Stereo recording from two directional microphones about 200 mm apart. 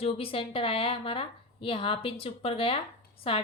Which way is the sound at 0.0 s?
30° left (ahead or behind).